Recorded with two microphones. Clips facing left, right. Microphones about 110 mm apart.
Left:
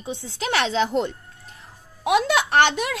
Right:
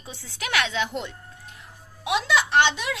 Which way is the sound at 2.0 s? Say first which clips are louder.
Left 4 dB; 50° left (ahead or behind).